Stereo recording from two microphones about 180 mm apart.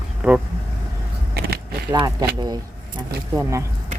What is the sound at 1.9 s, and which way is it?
Speech, 20° right (ahead or behind).